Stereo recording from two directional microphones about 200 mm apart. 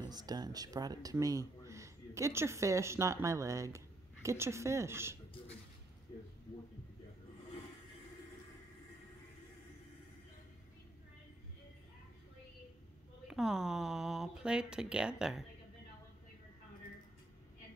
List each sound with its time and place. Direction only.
0.0 s speech: 20° right (ahead or behind)
13.3 s speech: centre (ahead or behind)